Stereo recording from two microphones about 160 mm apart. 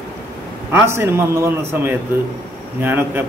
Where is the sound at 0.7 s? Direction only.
15° right (ahead or behind).